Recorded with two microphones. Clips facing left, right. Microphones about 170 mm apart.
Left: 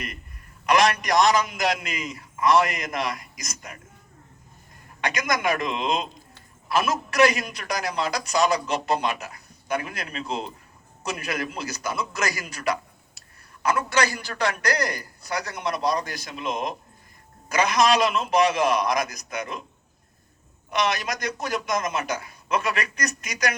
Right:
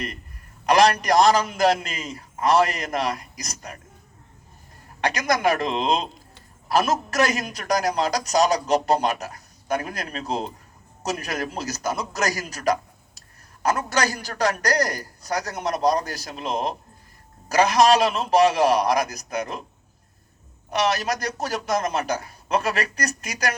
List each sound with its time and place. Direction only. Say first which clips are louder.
0.6 s a man's voice: right 3 dB; 35° right (ahead or behind)
4.9 s a man's voice: right 3 dB; 35° right (ahead or behind)
20.7 s a man's voice: right 3 dB; 35° right (ahead or behind)